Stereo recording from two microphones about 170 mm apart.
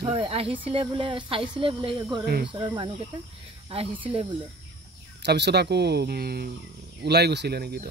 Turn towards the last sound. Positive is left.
turn(degrees=-65)  # may be behind; listen again after turning